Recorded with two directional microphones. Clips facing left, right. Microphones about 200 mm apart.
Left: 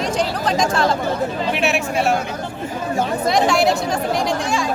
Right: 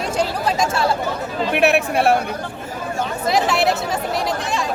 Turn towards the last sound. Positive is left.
turn(degrees=-5)  # may be behind; listen again after turning